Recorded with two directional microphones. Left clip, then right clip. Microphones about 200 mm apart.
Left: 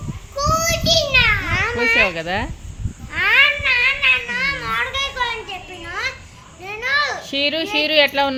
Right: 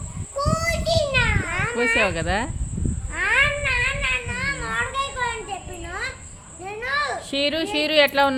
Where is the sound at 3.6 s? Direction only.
Centre (ahead or behind).